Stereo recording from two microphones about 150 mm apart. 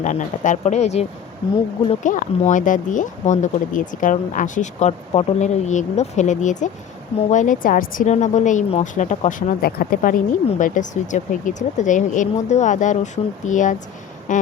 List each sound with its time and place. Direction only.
0.0 s speech: 55° left (ahead or behind)
2.0 s speech: 55° left (ahead or behind)
9.6 s speech: 90° left; by 10.2 s 70° left (ahead or behind)
10.6 s speech: 55° left (ahead or behind)
14.3 s a sound: 60° left (ahead or behind)